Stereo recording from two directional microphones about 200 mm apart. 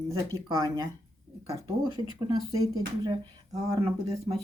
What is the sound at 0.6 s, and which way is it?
Speech, 25° right (ahead or behind).